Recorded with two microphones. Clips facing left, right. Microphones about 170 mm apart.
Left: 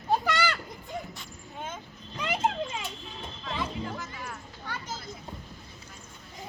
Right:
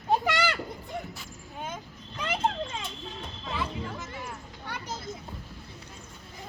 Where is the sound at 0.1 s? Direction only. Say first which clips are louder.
Right 1 dB; 20° right (ahead or behind).